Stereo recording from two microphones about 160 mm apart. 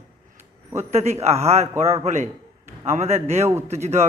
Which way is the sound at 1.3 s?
45° right (ahead or behind).